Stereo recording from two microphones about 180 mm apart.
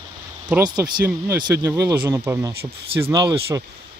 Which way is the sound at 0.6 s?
25° right (ahead or behind).